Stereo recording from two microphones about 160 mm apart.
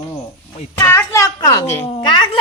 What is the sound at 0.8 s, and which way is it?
Speech, 20° left (ahead or behind).